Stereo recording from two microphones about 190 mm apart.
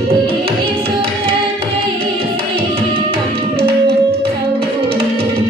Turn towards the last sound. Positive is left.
turn(degrees=-30)  # may be behind; listen again after turning